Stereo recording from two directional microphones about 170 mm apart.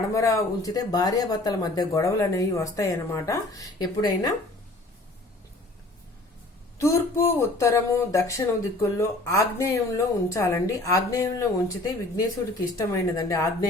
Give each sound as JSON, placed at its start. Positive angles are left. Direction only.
{"t": 0.1, "sound": "speech", "side_deg": 20}
{"t": 6.7, "sound": "speech", "side_deg": 15}